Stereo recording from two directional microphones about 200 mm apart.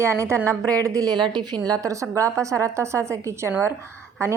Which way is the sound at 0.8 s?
15° right (ahead or behind).